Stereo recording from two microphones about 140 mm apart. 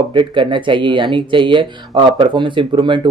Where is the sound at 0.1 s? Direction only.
35° right (ahead or behind).